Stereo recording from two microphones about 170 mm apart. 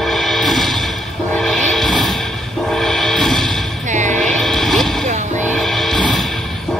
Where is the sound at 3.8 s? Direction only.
45° right (ahead or behind).